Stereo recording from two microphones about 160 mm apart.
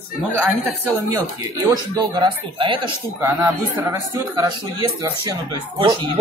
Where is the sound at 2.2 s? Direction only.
30° right (ahead or behind).